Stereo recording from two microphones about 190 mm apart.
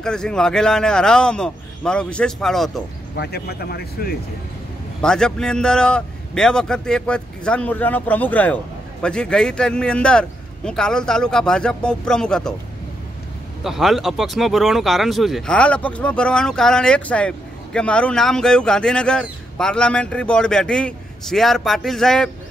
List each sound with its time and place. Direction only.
0.0 s speech: 5° left (ahead or behind)
3.2 s speech: 55° left (ahead or behind)
5.0 s speech: 5° left (ahead or behind)
13.7 s speech: centre (ahead or behind)